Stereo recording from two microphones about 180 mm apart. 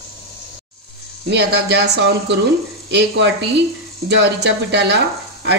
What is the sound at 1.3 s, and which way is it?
A woman's voice, 70° right (ahead or behind).